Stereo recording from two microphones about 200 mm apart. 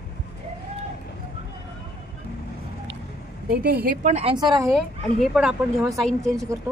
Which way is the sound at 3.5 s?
50° right (ahead or behind).